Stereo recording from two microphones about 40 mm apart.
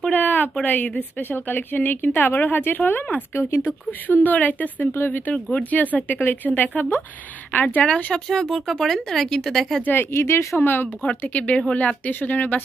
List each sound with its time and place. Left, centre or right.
0.1 s a sound: left
0.7 s a woman's voice: left
1.5 s a woman's voice: left
3.3 s speech: left
3.6 s a woman's voice: left
4.9 s speech: left
5.5 s a woman's voice: left
7.8 s speech: left
8.3 s speech: centre
10.1 s speech: left
11.0 s speech: left
12.1 s a woman's voice: left